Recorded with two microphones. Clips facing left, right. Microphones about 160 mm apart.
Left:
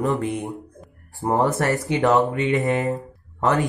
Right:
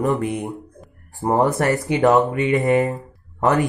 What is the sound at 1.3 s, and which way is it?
Speech, 15° right (ahead or behind).